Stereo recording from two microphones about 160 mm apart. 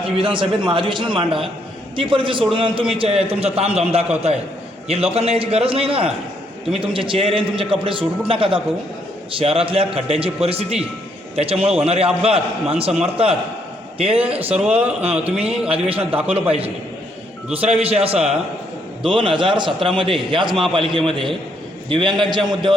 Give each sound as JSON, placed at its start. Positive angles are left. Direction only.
{"t": 0.2, "sound": "a man's voice", "side_deg": -30}
{"t": 14.6, "sound": "speech", "side_deg": -10}
{"t": 15.7, "sound": "a man's voice", "side_deg": -35}
{"t": 17.7, "sound": "a man's voice", "side_deg": -40}